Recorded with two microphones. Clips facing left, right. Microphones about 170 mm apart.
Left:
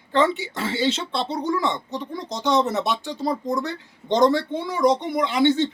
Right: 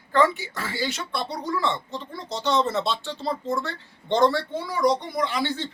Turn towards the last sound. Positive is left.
turn(degrees=20)  # may be behind; listen again after turning